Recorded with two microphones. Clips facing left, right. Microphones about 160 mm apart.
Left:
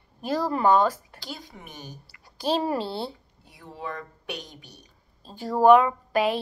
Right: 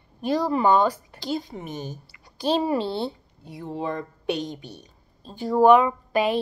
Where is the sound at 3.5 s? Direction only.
25° right (ahead or behind).